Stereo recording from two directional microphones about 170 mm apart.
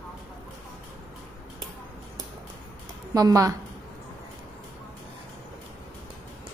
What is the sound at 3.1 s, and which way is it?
Speech, 20° right (ahead or behind).